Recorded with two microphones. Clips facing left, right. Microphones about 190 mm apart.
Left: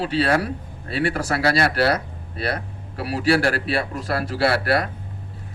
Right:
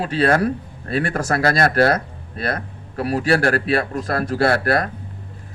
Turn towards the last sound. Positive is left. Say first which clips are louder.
# right 2 dB
turn(degrees=-45)  # may be behind; listen again after turning